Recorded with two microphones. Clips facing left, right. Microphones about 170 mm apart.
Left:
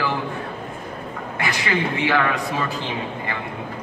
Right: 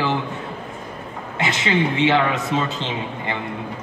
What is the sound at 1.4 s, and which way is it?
A man's voice, 20° right (ahead or behind).